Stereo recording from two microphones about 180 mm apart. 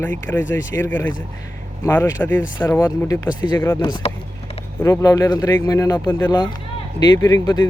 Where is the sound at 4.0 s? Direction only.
35° left (ahead or behind).